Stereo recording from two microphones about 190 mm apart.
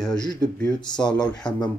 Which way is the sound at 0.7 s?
25° left (ahead or behind).